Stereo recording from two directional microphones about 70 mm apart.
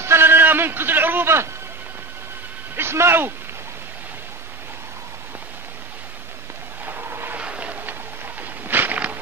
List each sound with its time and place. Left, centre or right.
0.0 s a man's voice: right
2.7 s speech: right
6.9 s vehicle: right
7.3 s a sound: centre